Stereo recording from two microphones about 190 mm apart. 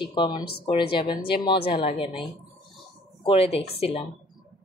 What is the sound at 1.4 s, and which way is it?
Speech, 25° left (ahead or behind).